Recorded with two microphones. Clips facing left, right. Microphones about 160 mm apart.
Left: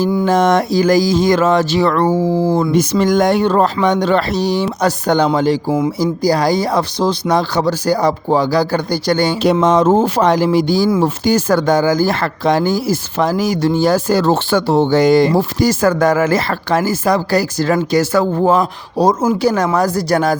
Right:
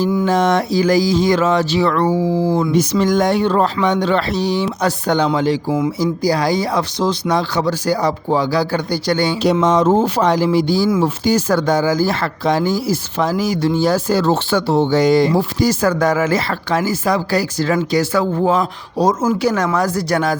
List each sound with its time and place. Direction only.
0.3 s speech: 45° left (ahead or behind)
19.0 s speech: 30° left (ahead or behind)